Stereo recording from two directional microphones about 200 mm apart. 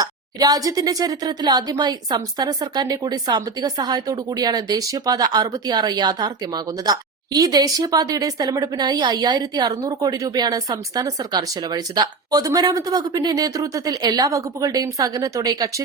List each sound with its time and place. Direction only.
0.0 s speech: 20° right (ahead or behind)